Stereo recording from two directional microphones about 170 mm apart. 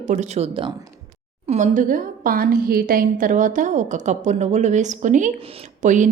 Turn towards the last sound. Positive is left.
turn(degrees=-45)  # may be behind; listen again after turning